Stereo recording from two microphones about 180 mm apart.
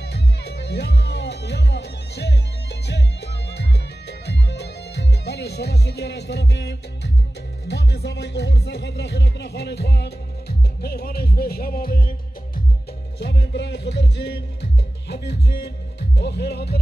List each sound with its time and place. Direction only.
0.0 s music: 70° left (ahead or behind)
13.2 s music: 70° left (ahead or behind)